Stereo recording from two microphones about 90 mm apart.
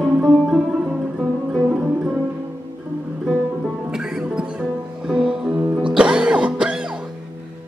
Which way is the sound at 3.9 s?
10° right (ahead or behind).